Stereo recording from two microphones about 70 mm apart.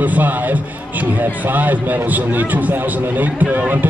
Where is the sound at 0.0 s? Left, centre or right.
Right.